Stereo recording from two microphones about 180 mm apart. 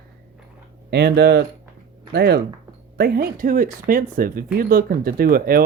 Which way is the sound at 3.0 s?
50° right (ahead or behind).